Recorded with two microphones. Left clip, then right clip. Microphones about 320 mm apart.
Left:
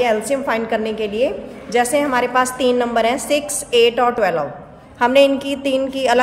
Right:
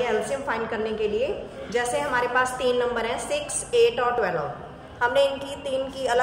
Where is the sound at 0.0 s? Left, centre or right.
Left.